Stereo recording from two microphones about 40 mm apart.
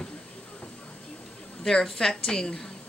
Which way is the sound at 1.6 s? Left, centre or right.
Centre.